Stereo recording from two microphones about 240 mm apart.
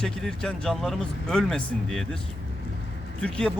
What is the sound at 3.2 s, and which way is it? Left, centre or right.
Speech, centre.